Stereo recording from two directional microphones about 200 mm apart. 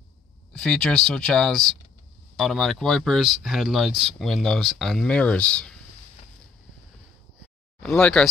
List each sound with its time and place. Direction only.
0.5 s speech: 5° left (ahead or behind)
7.8 s speech: 5° left (ahead or behind)